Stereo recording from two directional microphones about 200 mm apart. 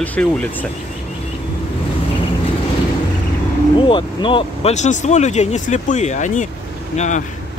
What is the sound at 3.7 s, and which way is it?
Speech, 25° left (ahead or behind).